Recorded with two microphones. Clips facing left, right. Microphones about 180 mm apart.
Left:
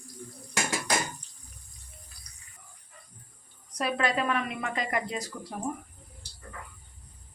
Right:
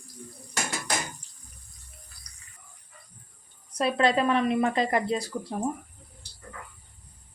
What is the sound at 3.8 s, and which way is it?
A woman's voice, 30° right (ahead or behind).